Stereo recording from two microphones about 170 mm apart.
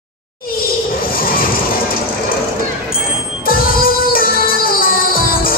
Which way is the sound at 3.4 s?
60° left (ahead or behind).